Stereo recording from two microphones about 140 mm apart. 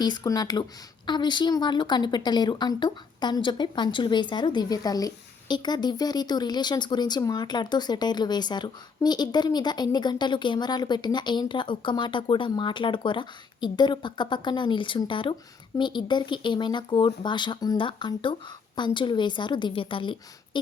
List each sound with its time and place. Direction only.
0.0 s a woman's voice: 30° left (ahead or behind)